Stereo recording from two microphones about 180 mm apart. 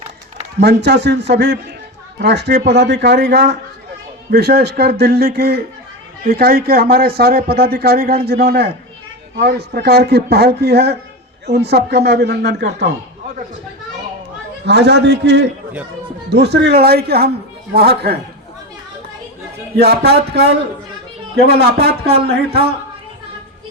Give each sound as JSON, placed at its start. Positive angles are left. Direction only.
{"t": 0.6, "sound": "a man's voice", "side_deg": -70}
{"t": 14.6, "sound": "a man's voice", "side_deg": -70}
{"t": 19.7, "sound": "speech", "side_deg": -65}